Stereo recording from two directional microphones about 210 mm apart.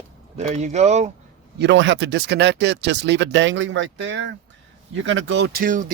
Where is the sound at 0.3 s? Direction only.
30° right (ahead or behind).